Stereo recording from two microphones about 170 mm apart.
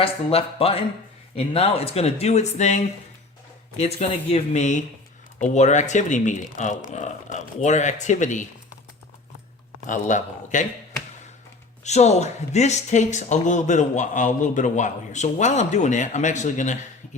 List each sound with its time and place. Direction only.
0.0 s speech: 35° left (ahead or behind)
9.8 s speech: 45° left (ahead or behind)
11.8 s speech: 40° left (ahead or behind)